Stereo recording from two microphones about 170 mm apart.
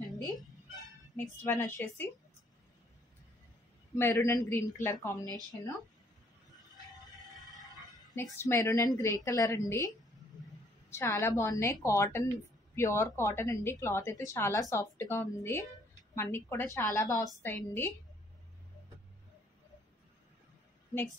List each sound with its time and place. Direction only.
1.1 s a woman's voice: 15° left (ahead or behind)
3.9 s a woman's voice: 15° left (ahead or behind)
7.3 s a sound: centre (ahead or behind)
8.1 s a woman's voice: 15° left (ahead or behind)
10.9 s a woman's voice: 15° left (ahead or behind)